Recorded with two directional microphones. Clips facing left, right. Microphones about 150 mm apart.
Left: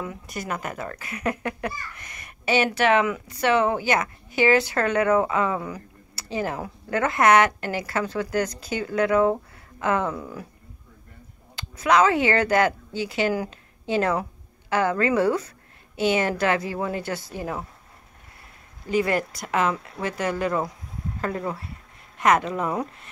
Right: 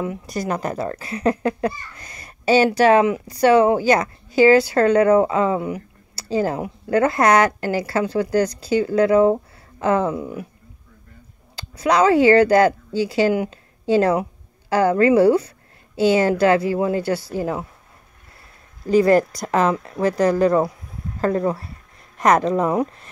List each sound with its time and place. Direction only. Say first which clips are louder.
0.3 s a child's voice: right 6 dB; 35° right (ahead or behind)
11.5 s speech: right 2 dB; 35° right (ahead or behind)
13.3 s a woman's voice: right 5 dB; 25° right (ahead or behind)
13.8 s a woman's voice: right 6 dB; 35° right (ahead or behind)
18.9 s a child's voice: right 8 dB; 35° right (ahead or behind)